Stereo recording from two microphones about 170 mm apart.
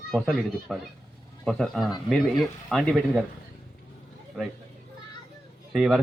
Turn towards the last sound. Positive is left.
turn(degrees=0)  # may be behind; listen again after turning